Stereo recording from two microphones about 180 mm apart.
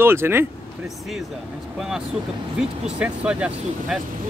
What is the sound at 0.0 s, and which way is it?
Speech, 15° right (ahead or behind).